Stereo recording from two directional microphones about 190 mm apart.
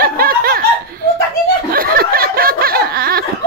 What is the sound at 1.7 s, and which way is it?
Snicker, 50° right (ahead or behind).